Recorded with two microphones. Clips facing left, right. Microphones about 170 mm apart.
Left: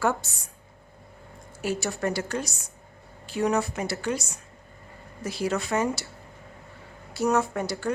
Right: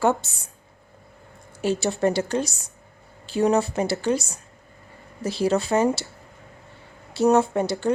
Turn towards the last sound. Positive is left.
turn(degrees=-25)  # may be behind; listen again after turning